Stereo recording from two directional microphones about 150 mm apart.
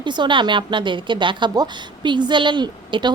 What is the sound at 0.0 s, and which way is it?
A woman's voice, 30° right (ahead or behind).